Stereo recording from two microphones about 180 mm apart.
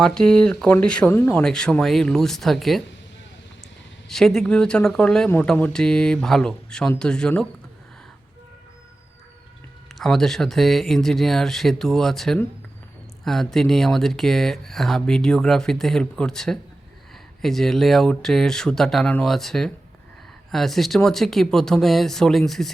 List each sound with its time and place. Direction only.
0.0 s speech: 5° left (ahead or behind)
4.1 s speech: centre (ahead or behind)
9.9 s speech: centre (ahead or behind)